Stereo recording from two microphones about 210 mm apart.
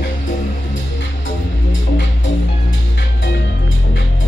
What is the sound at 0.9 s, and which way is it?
Music, 60° left (ahead or behind).